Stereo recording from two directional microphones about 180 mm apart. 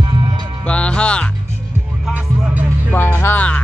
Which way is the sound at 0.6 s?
5° left (ahead or behind).